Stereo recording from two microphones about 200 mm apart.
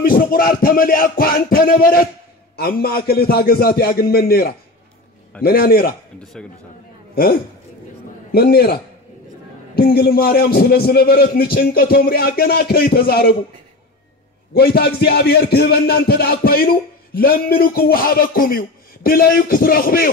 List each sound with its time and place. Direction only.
0.0 s a man's voice: 45° left (ahead or behind)
8.3 s a man's voice: 50° left (ahead or behind)
9.8 s a man's voice: 50° left (ahead or behind)
14.5 s a man's voice: 50° left (ahead or behind)